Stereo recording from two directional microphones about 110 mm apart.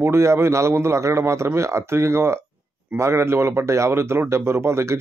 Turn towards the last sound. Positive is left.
turn(degrees=-25)  # may be behind; listen again after turning